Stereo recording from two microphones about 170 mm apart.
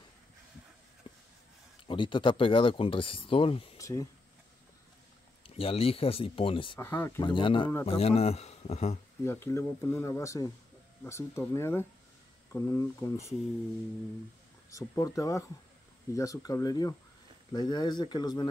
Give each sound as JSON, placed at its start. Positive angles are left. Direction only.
{"t": 1.0, "sound": "a sound", "side_deg": 25}
{"t": 1.9, "sound": "speech", "side_deg": 30}
{"t": 3.7, "sound": "speech", "side_deg": 20}
{"t": 5.4, "sound": "speech", "side_deg": 35}
{"t": 6.8, "sound": "speech", "side_deg": 15}
{"t": 7.2, "sound": "speech", "side_deg": 30}
{"t": 9.2, "sound": "speech", "side_deg": 15}
{"t": 14.7, "sound": "speech", "side_deg": 20}